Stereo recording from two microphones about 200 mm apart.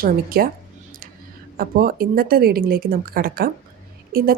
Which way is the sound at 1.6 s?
45° right (ahead or behind).